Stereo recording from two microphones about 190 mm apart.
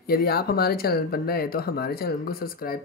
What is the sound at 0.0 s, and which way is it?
Speech, 55° left (ahead or behind).